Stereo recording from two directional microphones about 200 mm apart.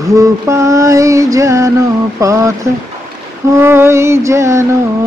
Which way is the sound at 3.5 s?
10° right (ahead or behind).